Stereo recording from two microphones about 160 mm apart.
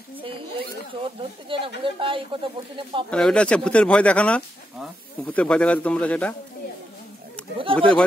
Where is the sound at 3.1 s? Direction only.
5° left (ahead or behind).